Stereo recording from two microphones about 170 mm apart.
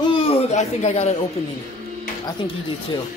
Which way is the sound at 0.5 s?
40° left (ahead or behind).